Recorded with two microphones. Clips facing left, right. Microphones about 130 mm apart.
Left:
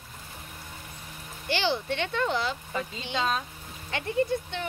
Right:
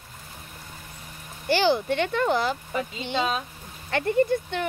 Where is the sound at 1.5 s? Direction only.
50° right (ahead or behind).